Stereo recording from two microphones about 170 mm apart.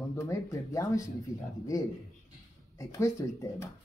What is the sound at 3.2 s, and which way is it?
Speech, 20° left (ahead or behind).